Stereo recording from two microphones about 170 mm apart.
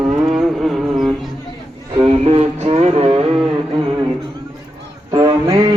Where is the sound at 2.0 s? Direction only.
35° right (ahead or behind).